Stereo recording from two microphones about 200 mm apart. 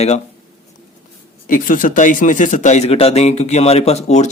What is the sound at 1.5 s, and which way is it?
Speech, 45° left (ahead or behind).